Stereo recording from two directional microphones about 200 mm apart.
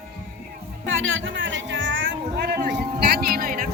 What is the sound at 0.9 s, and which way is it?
Music, 75° right (ahead or behind).